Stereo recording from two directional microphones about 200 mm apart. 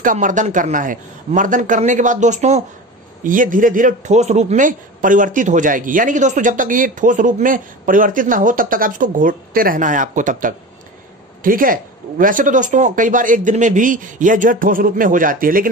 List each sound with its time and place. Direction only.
0.0 s speech: 40° right (ahead or behind)